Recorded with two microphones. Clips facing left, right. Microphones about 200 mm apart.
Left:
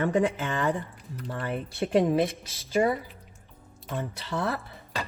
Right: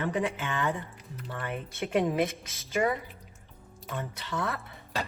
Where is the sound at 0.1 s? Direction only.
40° left (ahead or behind).